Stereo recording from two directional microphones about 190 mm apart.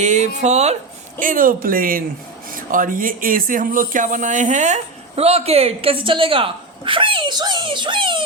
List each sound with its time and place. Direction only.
0.0 s speech: 35° right (ahead or behind)
1.2 s speech: 45° right (ahead or behind); by 8.2 s 25° right (ahead or behind)